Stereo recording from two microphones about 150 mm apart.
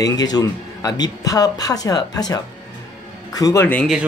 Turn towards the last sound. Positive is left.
turn(degrees=15)  # may be behind; listen again after turning